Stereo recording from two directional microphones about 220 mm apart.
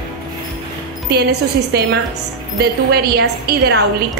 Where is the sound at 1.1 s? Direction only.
50° right (ahead or behind).